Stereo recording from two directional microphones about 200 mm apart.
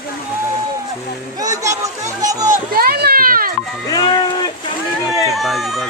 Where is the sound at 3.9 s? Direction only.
20° left (ahead or behind).